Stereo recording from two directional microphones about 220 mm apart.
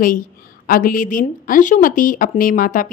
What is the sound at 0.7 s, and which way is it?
Speech, 40° left (ahead or behind).